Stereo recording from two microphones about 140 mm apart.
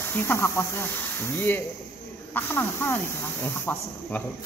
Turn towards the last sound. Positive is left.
turn(degrees=15)  # may be behind; listen again after turning